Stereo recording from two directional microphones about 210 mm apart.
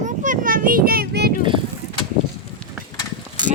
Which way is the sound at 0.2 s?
40° right (ahead or behind).